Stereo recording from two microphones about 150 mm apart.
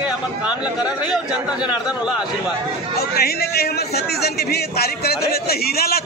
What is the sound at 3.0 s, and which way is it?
Speech, 90° left.